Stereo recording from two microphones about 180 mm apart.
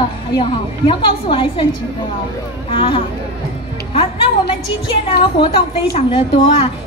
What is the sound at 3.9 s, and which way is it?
Music, 30° left (ahead or behind).